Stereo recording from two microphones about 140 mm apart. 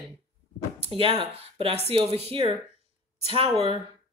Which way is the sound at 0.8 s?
40° right (ahead or behind).